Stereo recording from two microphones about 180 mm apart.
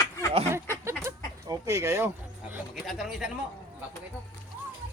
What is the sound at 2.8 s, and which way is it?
Speech, centre (ahead or behind).